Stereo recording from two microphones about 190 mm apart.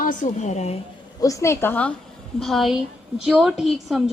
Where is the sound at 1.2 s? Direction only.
15° left (ahead or behind); by 4.1 s centre (ahead or behind).